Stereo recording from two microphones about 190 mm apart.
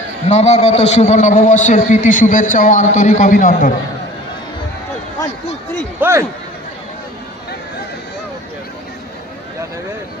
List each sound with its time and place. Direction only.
0.3 s a man's voice: 35° left (ahead or behind)
6.0 s a man's voice: 15° right (ahead or behind)